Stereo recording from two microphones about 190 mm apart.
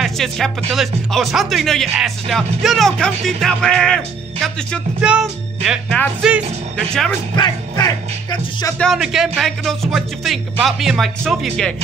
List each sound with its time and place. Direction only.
0.0 s speech: centre (ahead or behind)
7.3 s speech: 20° left (ahead or behind)
8.7 s speech: centre (ahead or behind)